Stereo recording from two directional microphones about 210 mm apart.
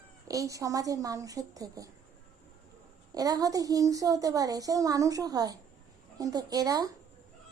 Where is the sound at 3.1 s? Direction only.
15° right (ahead or behind).